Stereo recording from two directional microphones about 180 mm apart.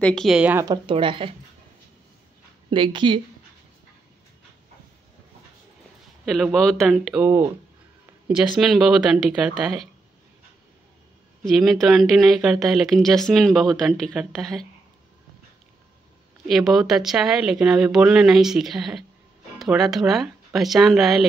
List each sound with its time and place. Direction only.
0.0 s speech: 5° left (ahead or behind)
0.7 s a woman's voice: 30° right (ahead or behind)
2.7 s a woman's voice: 25° right (ahead or behind)
6.2 s speech: centre (ahead or behind)
7.2 s speech: 15° right (ahead or behind)
8.5 s speech: centre (ahead or behind)
11.4 s speech: centre (ahead or behind)
16.4 s speech: centre (ahead or behind)